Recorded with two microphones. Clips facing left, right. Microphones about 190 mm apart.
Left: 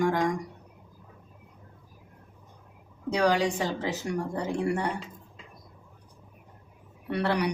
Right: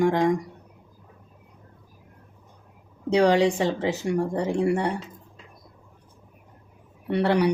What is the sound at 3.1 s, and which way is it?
Speech, 25° right (ahead or behind).